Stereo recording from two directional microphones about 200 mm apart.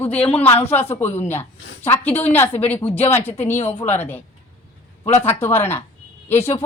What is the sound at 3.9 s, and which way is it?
A woman's voice, 10° left (ahead or behind).